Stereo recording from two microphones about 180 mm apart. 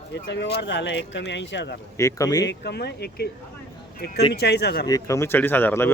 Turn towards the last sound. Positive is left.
turn(degrees=10)  # may be behind; listen again after turning